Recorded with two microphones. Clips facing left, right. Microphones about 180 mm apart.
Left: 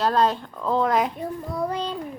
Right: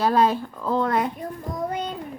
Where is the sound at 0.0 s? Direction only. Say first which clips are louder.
Right 1 dB; 10° right (ahead or behind).